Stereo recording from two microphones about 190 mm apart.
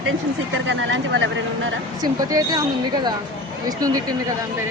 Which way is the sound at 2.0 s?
20° right (ahead or behind).